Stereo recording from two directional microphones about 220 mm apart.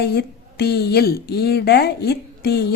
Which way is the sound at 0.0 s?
50° left (ahead or behind).